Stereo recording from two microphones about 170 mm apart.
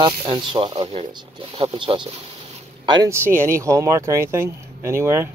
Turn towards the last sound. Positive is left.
turn(degrees=-15)  # may be behind; listen again after turning